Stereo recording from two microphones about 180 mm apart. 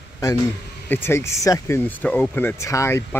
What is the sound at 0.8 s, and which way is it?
Speech, 10° left (ahead or behind).